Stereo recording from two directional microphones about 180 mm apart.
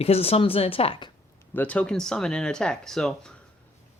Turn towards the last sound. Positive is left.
turn(degrees=5)  # may be behind; listen again after turning